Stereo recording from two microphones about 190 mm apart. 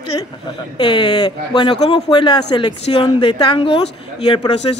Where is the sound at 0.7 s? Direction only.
25° left (ahead or behind).